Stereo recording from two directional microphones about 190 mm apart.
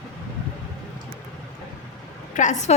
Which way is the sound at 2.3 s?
40° left (ahead or behind).